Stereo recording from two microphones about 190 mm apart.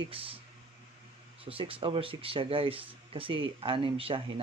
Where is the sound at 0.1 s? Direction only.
30° right (ahead or behind).